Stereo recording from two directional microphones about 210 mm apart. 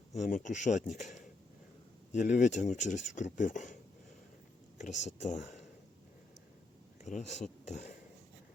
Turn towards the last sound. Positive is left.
turn(degrees=35)  # may be behind; listen again after turning